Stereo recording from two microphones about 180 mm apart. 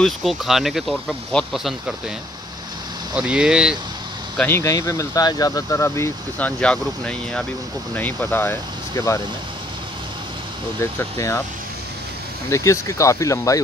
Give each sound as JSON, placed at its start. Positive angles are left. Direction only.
{"t": 0.0, "sound": "speech", "side_deg": 0}
{"t": 3.2, "sound": "speech", "side_deg": -5}
{"t": 4.4, "sound": "speech", "side_deg": 15}
{"t": 10.8, "sound": "speech", "side_deg": 15}
{"t": 12.4, "sound": "speech", "side_deg": 15}